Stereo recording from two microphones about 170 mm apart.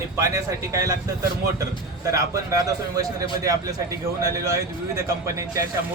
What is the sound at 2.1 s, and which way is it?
A man's voice, 20° right (ahead or behind).